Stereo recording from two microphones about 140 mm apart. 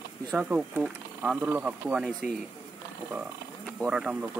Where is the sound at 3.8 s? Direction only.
5° right (ahead or behind).